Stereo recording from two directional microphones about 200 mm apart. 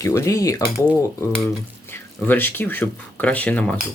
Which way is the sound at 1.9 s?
10° left (ahead or behind).